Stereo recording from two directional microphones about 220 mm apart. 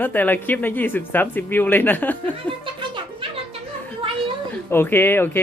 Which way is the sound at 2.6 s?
20° right (ahead or behind).